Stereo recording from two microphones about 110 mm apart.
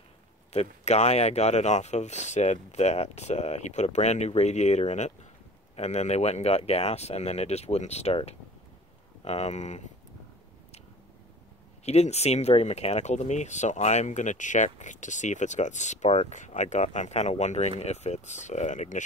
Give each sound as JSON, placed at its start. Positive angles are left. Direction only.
{"t": 0.5, "sound": "speech", "side_deg": 85}
{"t": 9.2, "sound": "speech", "side_deg": 85}
{"t": 11.8, "sound": "speech", "side_deg": 75}